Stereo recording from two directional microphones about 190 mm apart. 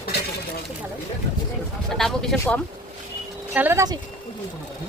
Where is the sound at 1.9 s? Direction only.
Centre (ahead or behind).